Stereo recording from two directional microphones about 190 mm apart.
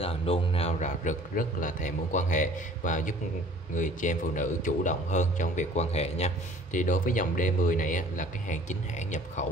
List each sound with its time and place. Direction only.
0.0 s a man's voice: 30° left (ahead or behind)